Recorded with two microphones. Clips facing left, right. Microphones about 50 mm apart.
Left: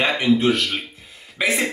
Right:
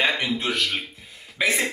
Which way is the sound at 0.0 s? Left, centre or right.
Centre.